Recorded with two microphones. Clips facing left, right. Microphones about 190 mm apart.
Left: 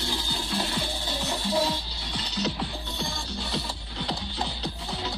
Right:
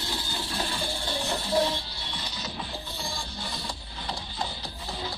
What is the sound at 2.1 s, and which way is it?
Music, 70° left (ahead or behind).